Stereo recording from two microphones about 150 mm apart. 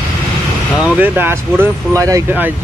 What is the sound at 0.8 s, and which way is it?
Speech, 10° right (ahead or behind).